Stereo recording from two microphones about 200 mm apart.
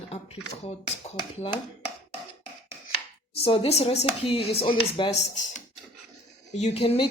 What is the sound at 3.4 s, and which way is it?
Speech, 30° left (ahead or behind).